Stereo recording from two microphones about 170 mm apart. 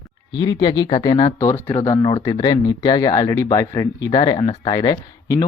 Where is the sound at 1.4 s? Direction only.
15° left (ahead or behind).